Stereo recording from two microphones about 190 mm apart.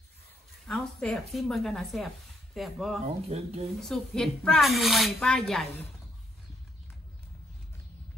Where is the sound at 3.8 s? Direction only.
5° left (ahead or behind).